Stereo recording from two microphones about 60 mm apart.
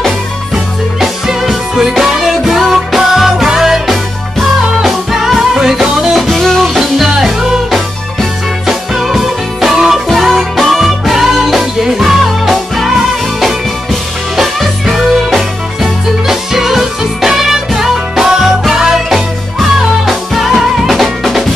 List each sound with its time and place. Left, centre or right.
1.0 s music: centre
6.1 s music: centre
14.3 s music: centre